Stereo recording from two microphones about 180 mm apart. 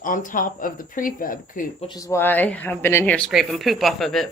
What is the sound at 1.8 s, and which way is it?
Speech, 20° left (ahead or behind).